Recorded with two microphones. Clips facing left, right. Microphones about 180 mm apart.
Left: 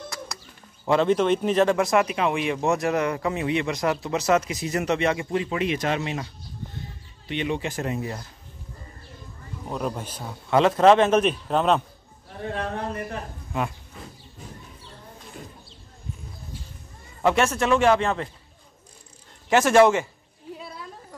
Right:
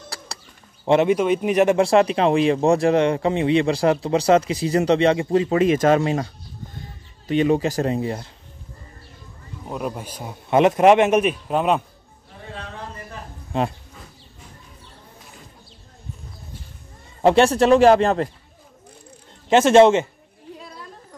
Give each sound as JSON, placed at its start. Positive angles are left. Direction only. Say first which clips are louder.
{"t": 1.0, "sound": "a man's voice", "louder": "right 2 dB", "side_deg": -10}
{"t": 1.8, "sound": "speech", "louder": "right 5 dB", "side_deg": -30}
{"t": 7.2, "sound": "speech", "louder": "right 9 dB", "side_deg": -40}
{"t": 9.7, "sound": "a man's voice", "louder": "right 1 dB", "side_deg": -5}
{"t": 12.5, "sound": "a sound", "louder": "left 6 dB", "side_deg": 60}
{"t": 13.5, "sound": "speech", "louder": "right 5 dB", "side_deg": -30}
{"t": 17.2, "sound": "speech", "louder": "right 6 dB", "side_deg": -30}
{"t": 19.5, "sound": "a man's voice", "louder": "right 4 dB", "side_deg": -25}